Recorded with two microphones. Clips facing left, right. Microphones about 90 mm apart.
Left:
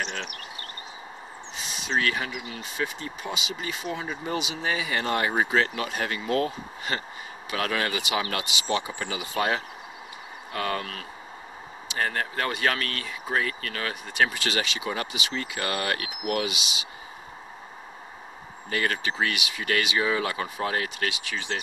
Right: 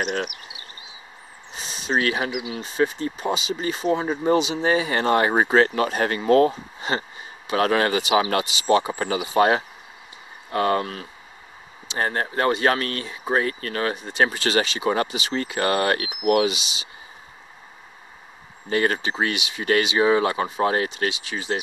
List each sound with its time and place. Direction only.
0.0 s bird: 50° right (ahead or behind)
1.6 s a sound: 35° right (ahead or behind)
2.6 s speech: 35° right (ahead or behind)
6.9 s speech: 25° right (ahead or behind)
18.7 s speech: 30° right (ahead or behind)